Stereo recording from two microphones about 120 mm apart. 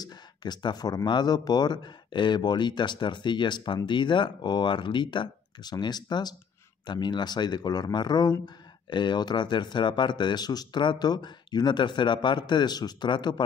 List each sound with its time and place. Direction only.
0.0 s speech: 35° left (ahead or behind)